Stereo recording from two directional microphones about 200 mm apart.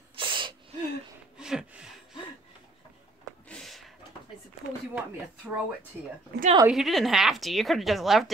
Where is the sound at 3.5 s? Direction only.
Centre (ahead or behind).